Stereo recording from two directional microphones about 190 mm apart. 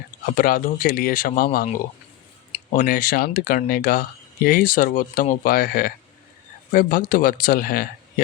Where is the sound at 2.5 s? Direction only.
40° left (ahead or behind).